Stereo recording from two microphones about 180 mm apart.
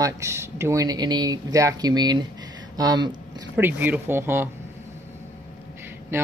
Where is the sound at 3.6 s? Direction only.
10° right (ahead or behind).